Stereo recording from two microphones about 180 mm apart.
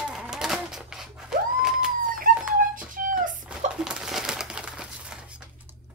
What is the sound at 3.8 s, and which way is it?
Crumpling, 5° right (ahead or behind).